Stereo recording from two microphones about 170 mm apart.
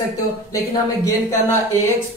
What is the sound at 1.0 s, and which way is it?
Speech, 15° left (ahead or behind).